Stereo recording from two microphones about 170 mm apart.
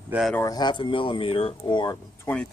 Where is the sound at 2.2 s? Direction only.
5° left (ahead or behind).